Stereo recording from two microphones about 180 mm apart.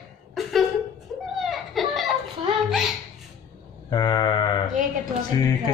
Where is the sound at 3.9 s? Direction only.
25° left (ahead or behind).